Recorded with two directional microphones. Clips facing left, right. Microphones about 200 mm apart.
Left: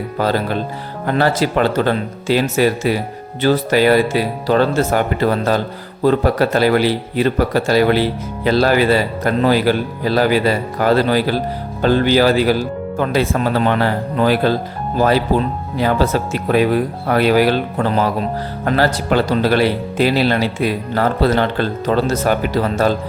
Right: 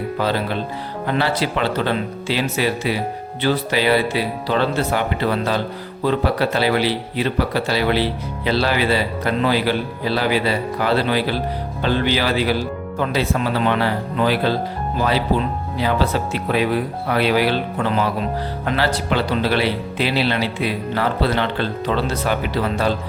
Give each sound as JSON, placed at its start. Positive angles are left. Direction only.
{"t": 0.2, "sound": "speech", "side_deg": 45}